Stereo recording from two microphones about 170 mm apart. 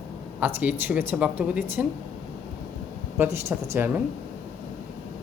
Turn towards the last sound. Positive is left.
turn(degrees=-10)  # may be behind; listen again after turning